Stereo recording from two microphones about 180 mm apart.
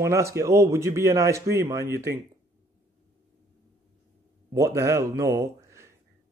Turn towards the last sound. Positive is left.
turn(degrees=-15)  # may be behind; listen again after turning